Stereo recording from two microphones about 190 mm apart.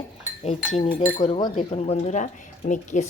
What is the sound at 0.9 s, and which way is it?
A woman's voice, 45° left (ahead or behind).